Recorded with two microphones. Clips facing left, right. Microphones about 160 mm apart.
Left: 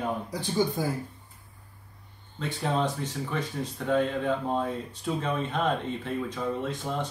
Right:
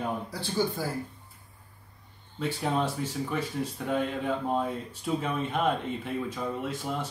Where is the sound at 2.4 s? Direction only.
10° right (ahead or behind).